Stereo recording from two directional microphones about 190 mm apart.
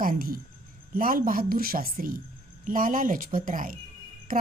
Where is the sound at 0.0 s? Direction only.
50° right (ahead or behind).